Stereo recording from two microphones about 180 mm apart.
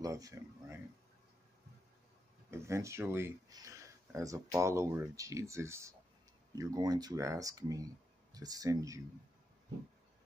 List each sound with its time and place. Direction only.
0.0 s speech: 20° right (ahead or behind)
2.5 s speech: 15° right (ahead or behind)